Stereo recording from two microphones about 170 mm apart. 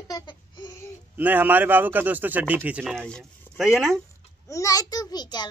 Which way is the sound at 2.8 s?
Centre (ahead or behind).